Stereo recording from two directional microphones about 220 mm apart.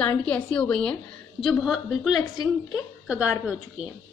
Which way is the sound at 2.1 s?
20° left (ahead or behind).